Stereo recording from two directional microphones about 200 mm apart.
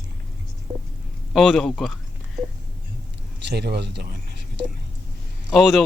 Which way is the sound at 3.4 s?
55° right (ahead or behind).